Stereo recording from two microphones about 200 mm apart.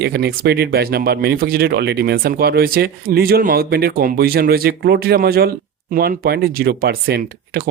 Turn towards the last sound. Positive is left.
turn(degrees=-55)  # may be behind; listen again after turning